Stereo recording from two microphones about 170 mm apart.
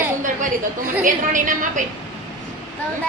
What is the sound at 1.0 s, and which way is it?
Speech, 50° right (ahead or behind).